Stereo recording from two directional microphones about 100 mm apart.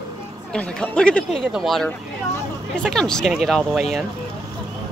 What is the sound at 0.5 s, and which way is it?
Speech, 10° left (ahead or behind).